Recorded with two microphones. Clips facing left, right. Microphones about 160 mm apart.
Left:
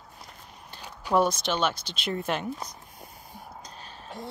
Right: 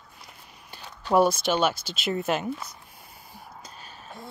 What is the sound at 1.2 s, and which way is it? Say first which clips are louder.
Speech: right 3 dB; 10° right (ahead or behind).